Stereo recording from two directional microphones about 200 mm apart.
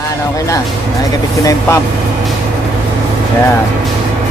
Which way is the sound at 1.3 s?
15° left (ahead or behind).